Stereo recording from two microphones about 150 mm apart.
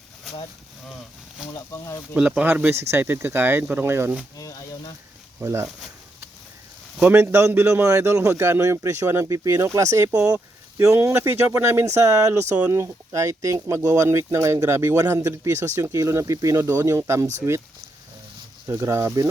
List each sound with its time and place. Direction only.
1.5 s speech: 20° left (ahead or behind)
2.1 s speech: 10° right (ahead or behind)
5.4 s speech: 15° right (ahead or behind)
7.1 s speech: 15° right (ahead or behind)
18.7 s speech: 20° right (ahead or behind)